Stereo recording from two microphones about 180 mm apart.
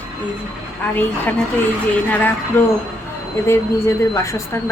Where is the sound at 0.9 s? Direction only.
10° left (ahead or behind).